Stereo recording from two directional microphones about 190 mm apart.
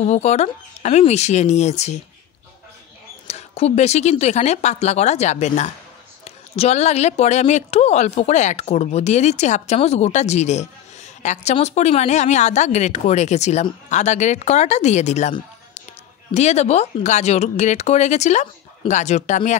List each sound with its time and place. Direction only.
0.0 s a woman's voice: 35° left (ahead or behind)
3.3 s a woman's voice: 35° left (ahead or behind)
16.3 s a woman's voice: 35° left (ahead or behind)